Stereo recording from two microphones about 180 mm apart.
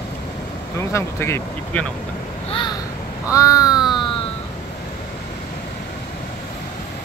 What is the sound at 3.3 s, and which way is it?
Crow, 20° left (ahead or behind).